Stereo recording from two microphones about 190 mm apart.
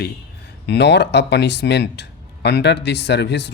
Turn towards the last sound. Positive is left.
turn(degrees=65)  # may be behind; listen again after turning